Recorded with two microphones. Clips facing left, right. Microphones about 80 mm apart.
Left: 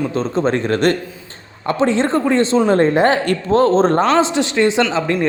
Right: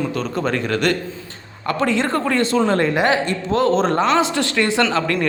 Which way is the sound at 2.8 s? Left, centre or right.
Left.